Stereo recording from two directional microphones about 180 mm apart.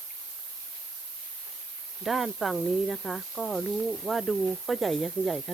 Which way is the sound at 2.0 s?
Centre (ahead or behind).